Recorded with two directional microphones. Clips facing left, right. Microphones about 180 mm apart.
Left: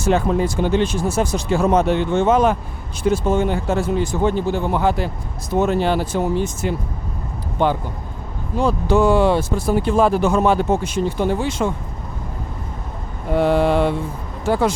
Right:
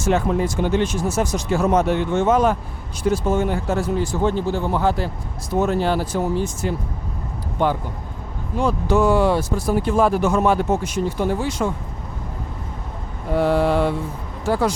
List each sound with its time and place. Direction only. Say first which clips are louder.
0.0 s speech: left 2 dB; 35° left (ahead or behind)
13.3 s speech: left 2 dB; 20° left (ahead or behind)